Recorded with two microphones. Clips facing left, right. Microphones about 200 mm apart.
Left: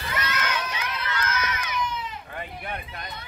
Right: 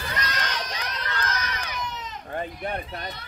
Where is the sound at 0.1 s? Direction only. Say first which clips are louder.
Left 4 dB; 35° right (ahead or behind).